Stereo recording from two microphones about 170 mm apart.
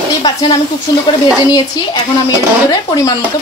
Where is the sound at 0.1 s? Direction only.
20° left (ahead or behind).